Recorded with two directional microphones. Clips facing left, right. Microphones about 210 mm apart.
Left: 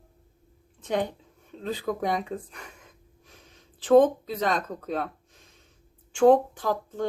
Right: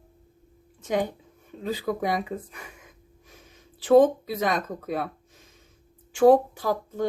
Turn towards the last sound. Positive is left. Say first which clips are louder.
# right 1 dB
turn(degrees=-10)  # may be behind; listen again after turning